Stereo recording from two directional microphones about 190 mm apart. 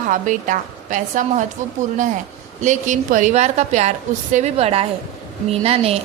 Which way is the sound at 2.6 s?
40° right (ahead or behind).